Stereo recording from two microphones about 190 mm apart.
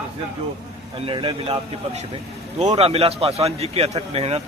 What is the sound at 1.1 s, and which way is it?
Speech, 25° right (ahead or behind).